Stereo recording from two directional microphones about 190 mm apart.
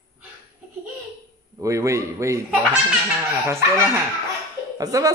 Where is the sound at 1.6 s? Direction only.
15° right (ahead or behind).